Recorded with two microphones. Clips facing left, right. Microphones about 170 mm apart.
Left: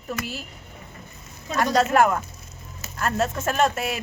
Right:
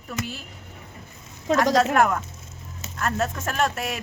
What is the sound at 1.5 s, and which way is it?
Speech, 90° right.